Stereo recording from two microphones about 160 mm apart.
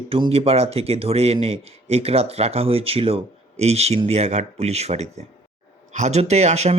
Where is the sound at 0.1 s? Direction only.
35° right (ahead or behind).